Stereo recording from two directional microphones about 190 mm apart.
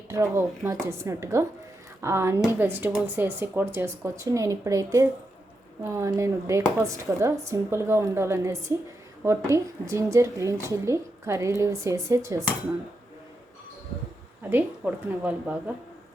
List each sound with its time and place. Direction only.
0.1 s a woman's voice: 15° right (ahead or behind)
14.5 s a woman's voice: 10° right (ahead or behind)